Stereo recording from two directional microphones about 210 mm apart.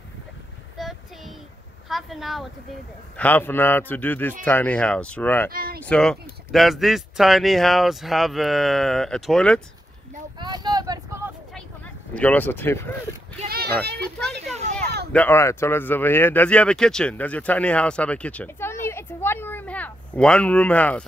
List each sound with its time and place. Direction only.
0.7 s child singing: centre (ahead or behind)
1.9 s a man's voice: centre (ahead or behind)
5.5 s speech: 45° right (ahead or behind)
5.9 s speech: 5° left (ahead or behind)
10.4 s vehicle: 20° right (ahead or behind)
12.1 s a man's voice: 5° left (ahead or behind)
13.5 s speech: 50° right (ahead or behind)
15.1 s speech: 10° left (ahead or behind)